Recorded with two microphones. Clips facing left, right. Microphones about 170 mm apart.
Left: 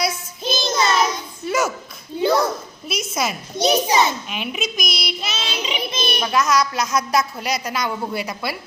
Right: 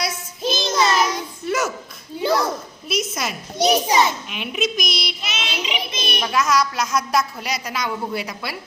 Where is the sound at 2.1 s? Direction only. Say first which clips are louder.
Left 4 dB; 25° left (ahead or behind).